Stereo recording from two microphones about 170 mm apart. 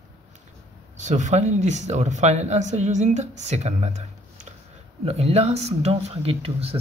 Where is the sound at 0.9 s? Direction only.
45° right (ahead or behind).